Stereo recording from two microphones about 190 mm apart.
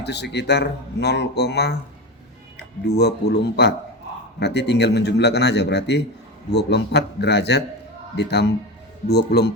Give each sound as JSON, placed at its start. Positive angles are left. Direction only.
{"t": 0.0, "sound": "speech", "side_deg": 60}
{"t": 2.8, "sound": "speech", "side_deg": 60}